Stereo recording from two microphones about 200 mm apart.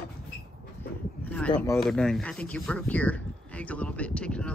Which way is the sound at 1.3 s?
10° left (ahead or behind).